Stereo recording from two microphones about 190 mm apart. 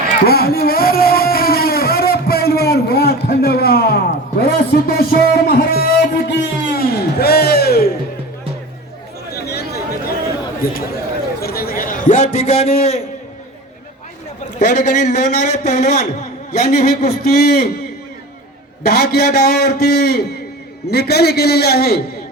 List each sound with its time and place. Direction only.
0.3 s a sound: 55° left (ahead or behind)
9.5 s chatter: 55° left (ahead or behind)
10.6 s speech: 50° left (ahead or behind)
11.4 s a sound: 55° left (ahead or behind); by 13.0 s 35° left (ahead or behind)
14.6 s a man's voice: 40° left (ahead or behind)
16.8 s a man's voice: 55° left (ahead or behind)
18.8 s a man's voice: 55° left (ahead or behind)